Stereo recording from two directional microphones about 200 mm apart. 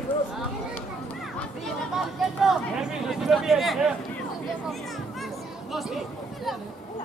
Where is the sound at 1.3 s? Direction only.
Centre (ahead or behind).